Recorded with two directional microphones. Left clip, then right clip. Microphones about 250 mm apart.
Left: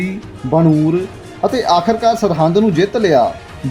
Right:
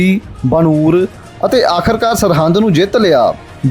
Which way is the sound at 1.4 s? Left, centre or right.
Right.